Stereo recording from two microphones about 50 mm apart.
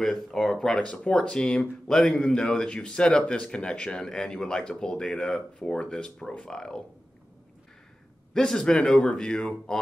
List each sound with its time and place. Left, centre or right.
0.0 s speech: centre
0.7 s speech: left
8.3 s speech: centre